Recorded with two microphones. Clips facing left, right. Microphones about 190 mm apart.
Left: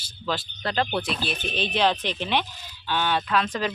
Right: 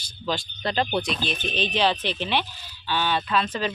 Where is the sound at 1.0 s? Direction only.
5° left (ahead or behind).